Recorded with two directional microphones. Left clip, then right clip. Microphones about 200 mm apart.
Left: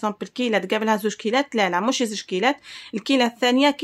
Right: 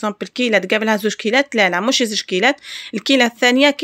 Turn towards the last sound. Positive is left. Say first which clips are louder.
# right 5 dB
turn(degrees=-20)  # may be behind; listen again after turning